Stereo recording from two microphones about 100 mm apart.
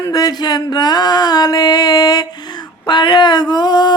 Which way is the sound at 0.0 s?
40° left (ahead or behind).